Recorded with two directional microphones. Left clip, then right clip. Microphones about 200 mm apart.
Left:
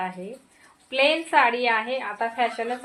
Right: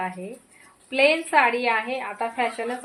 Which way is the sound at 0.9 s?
20° right (ahead or behind).